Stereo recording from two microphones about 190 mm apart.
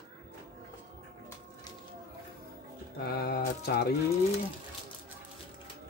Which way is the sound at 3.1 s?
55° left (ahead or behind).